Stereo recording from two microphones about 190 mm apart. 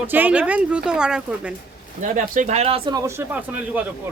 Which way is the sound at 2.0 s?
40° right (ahead or behind).